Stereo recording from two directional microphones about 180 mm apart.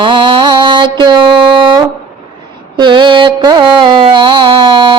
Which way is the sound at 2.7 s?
25° right (ahead or behind).